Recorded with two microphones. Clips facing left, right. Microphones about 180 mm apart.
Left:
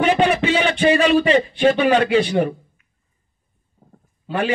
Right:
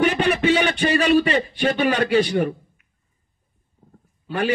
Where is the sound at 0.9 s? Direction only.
45° right (ahead or behind).